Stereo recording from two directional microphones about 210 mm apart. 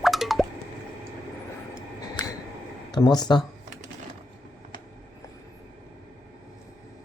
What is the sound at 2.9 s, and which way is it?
Speech, 20° left (ahead or behind).